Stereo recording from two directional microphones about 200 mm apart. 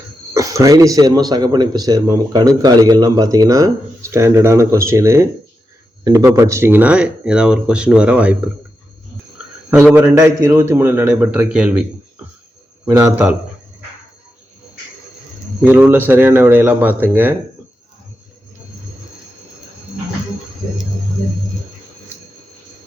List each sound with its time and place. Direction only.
0.3 s speech: 15° right (ahead or behind)
9.6 s speech: 10° right (ahead or behind)
15.6 s speech: 10° right (ahead or behind)